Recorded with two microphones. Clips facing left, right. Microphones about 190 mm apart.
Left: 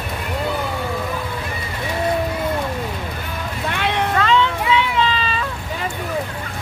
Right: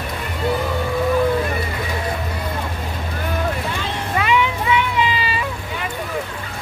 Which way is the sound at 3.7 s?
65° left (ahead or behind).